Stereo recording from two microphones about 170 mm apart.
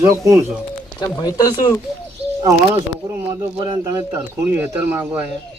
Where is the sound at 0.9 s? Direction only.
25° left (ahead or behind).